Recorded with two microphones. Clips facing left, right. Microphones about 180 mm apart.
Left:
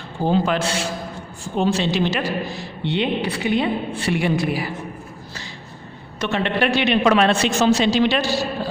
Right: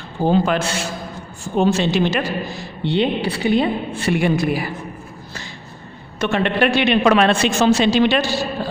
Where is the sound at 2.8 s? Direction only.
35° right (ahead or behind).